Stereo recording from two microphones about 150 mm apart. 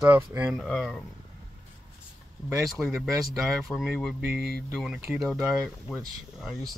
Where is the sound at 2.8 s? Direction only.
5° right (ahead or behind).